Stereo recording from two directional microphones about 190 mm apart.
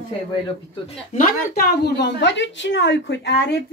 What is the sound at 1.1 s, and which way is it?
A woman's voice, 50° left (ahead or behind).